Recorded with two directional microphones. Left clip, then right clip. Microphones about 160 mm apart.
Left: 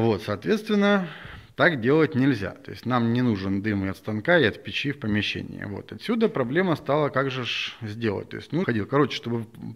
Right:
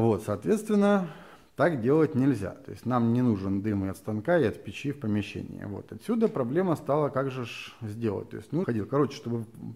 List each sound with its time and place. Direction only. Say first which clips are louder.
0.0 s speech: left 2 dB; centre (ahead or behind)
5.6 s speech: left 4 dB; 15° left (ahead or behind)
6.0 s speech: left 3 dB; 5° left (ahead or behind)